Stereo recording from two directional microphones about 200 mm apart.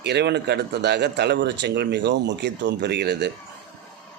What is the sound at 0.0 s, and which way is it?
Speech, 55° right (ahead or behind).